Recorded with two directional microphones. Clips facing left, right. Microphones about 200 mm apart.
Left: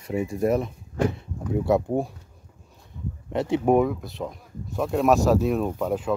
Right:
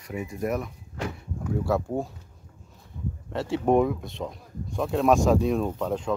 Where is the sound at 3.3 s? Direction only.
15° left (ahead or behind).